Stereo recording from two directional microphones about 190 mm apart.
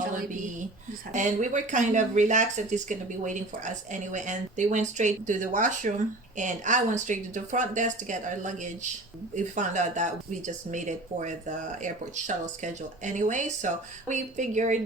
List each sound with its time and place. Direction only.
1.1 s speech: 40° right (ahead or behind)